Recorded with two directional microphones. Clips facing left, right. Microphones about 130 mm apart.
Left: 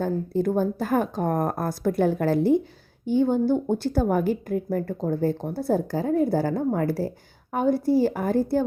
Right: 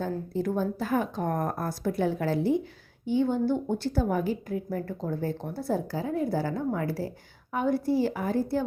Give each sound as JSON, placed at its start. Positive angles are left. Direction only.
{"t": 0.0, "sound": "a woman's voice", "side_deg": 50}